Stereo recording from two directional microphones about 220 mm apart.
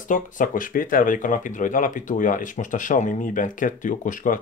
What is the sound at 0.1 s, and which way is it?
Speech, 35° left (ahead or behind).